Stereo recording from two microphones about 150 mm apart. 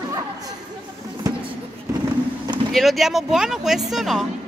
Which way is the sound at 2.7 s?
Centre (ahead or behind).